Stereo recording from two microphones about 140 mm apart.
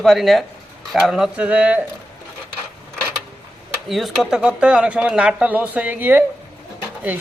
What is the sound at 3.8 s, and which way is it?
Speech, centre (ahead or behind).